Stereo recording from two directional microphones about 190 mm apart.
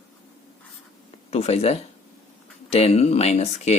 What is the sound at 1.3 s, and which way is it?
Speech, 35° left (ahead or behind).